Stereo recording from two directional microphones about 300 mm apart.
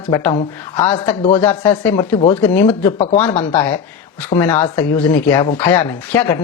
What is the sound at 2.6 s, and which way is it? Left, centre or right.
Speech, left.